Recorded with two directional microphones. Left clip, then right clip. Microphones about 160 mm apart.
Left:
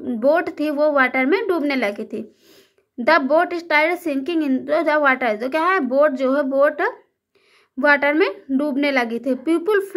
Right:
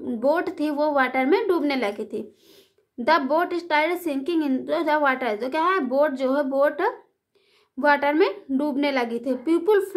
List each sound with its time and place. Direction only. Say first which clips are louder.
0.2 s speech: left 5 dB; 15° left (ahead or behind)